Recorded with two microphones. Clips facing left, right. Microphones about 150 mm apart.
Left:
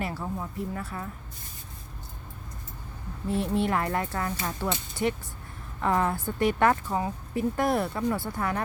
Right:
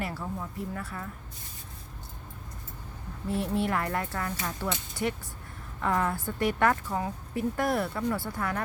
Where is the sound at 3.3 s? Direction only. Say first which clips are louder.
Left 2 dB; 20° left (ahead or behind).